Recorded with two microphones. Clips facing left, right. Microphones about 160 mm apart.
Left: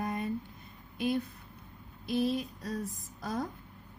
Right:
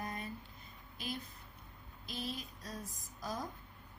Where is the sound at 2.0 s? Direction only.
60° left (ahead or behind).